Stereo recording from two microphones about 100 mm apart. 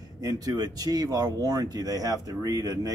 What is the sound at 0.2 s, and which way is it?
Speech, 40° right (ahead or behind).